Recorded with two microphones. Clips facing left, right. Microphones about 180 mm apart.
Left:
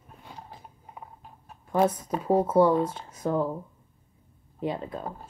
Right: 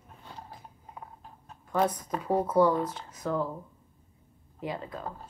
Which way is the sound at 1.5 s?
10° left (ahead or behind).